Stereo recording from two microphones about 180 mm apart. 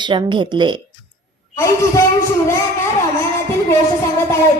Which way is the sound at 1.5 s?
15° left (ahead or behind).